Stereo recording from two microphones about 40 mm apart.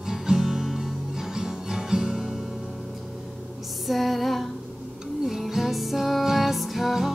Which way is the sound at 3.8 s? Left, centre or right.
Centre.